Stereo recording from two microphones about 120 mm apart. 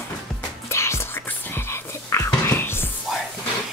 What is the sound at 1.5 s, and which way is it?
Frog, 20° left (ahead or behind).